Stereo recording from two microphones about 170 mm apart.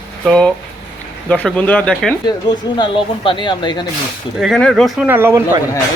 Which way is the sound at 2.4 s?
25° left (ahead or behind).